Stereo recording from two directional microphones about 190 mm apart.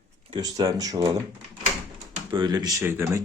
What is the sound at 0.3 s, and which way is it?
Speech, 20° right (ahead or behind).